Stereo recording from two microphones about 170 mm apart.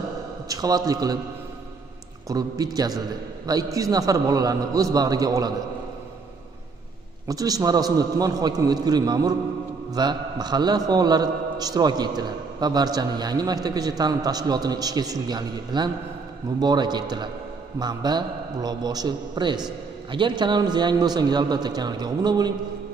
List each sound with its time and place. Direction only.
0.5 s a man's voice: 20° right (ahead or behind)
2.2 s a man's voice: 20° right (ahead or behind)
7.2 s a man's voice: 20° right (ahead or behind)